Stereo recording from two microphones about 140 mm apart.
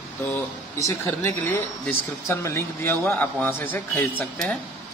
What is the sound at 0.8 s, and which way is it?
Speech, 20° left (ahead or behind).